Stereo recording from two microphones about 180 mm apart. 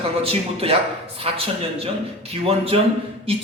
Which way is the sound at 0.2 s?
30° right (ahead or behind).